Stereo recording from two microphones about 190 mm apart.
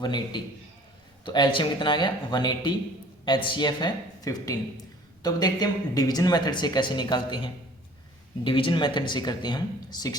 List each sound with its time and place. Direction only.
0.0 s speech: 25° left (ahead or behind)